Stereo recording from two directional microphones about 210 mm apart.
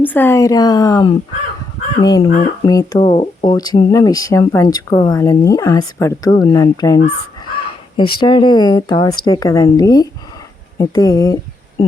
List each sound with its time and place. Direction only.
0.0 s speech: 10° left (ahead or behind)
3.0 s speech: 30° left (ahead or behind)
7.0 s crow: 25° left (ahead or behind)
8.2 s speech: 20° left (ahead or behind)